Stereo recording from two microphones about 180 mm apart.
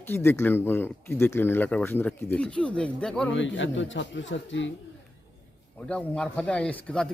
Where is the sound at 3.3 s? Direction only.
90° left.